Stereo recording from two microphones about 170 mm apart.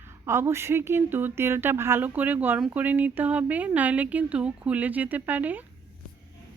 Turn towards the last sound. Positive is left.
turn(degrees=-10)  # may be behind; listen again after turning